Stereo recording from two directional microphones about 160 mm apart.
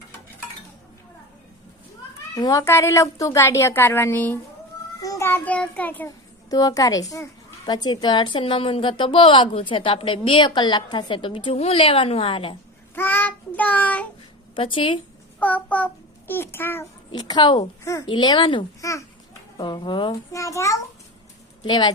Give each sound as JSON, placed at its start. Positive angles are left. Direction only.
{"t": 2.3, "sound": "a woman's voice", "side_deg": 20}
{"t": 6.5, "sound": "a woman's voice", "side_deg": 20}
{"t": 13.0, "sound": "child singing", "side_deg": 10}
{"t": 14.5, "sound": "a woman's voice", "side_deg": 35}
{"t": 15.4, "sound": "a child's voice", "side_deg": 10}
{"t": 17.1, "sound": "a woman's voice", "side_deg": 25}
{"t": 18.8, "sound": "a woman's voice", "side_deg": 20}
{"t": 20.3, "sound": "a woman's voice", "side_deg": 20}